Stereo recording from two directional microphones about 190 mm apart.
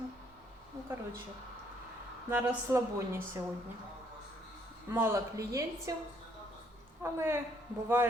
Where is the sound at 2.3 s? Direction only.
15° right (ahead or behind).